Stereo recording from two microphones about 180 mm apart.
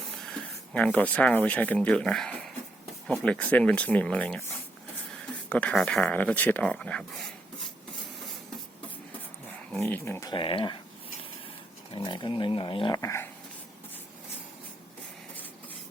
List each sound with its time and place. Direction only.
0.7 s speech: 5° left (ahead or behind)
5.5 s speech: 5° left (ahead or behind)
9.5 s dog: 10° left (ahead or behind); by 10.8 s 30° left (ahead or behind)
11.9 s speech: 25° left (ahead or behind)